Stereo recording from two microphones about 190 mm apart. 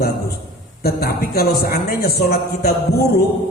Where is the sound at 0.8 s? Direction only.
55° left (ahead or behind).